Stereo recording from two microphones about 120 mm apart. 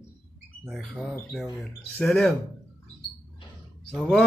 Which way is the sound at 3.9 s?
10° left (ahead or behind).